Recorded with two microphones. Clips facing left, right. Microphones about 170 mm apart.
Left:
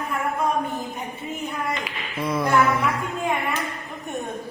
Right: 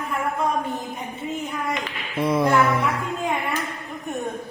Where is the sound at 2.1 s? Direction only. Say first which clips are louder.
Right 2 dB; 25° right (ahead or behind).